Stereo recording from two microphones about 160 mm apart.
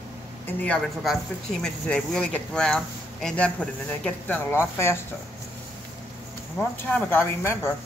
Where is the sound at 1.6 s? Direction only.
5° left (ahead or behind).